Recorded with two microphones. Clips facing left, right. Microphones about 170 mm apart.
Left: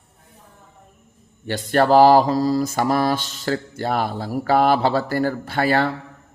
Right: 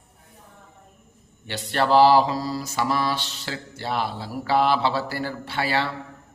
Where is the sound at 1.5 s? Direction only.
45° left (ahead or behind).